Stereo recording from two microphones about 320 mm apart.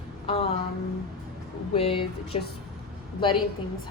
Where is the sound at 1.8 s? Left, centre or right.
Centre.